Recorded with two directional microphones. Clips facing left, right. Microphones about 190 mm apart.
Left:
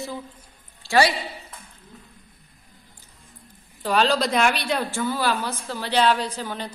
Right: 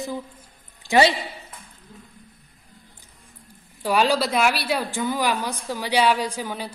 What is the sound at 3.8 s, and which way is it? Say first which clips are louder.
A woman's voice: right 1 dB; 10° right (ahead or behind).